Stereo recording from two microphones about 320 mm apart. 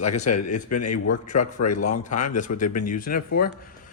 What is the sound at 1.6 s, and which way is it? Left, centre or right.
Speech, left.